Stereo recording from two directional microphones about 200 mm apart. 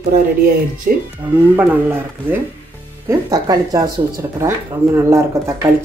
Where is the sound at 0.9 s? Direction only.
45° right (ahead or behind).